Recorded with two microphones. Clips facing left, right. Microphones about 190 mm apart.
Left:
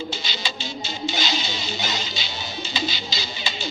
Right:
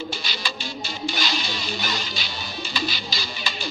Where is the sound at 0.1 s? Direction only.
25° left (ahead or behind).